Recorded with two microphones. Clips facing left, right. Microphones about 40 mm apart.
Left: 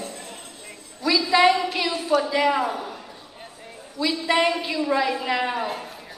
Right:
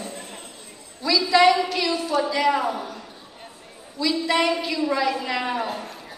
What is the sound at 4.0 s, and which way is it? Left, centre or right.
A woman's voice, left.